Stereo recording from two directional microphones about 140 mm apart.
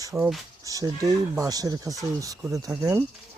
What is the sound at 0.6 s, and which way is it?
Speech, 25° right (ahead or behind).